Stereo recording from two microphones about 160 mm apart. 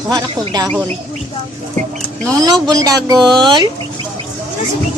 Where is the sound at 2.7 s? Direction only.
25° right (ahead or behind).